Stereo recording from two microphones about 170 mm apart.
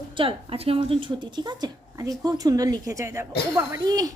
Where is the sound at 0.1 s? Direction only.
30° right (ahead or behind).